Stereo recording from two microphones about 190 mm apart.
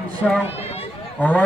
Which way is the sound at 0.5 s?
30° left (ahead or behind).